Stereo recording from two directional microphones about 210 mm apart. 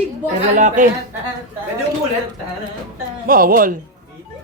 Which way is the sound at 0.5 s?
40° right (ahead or behind).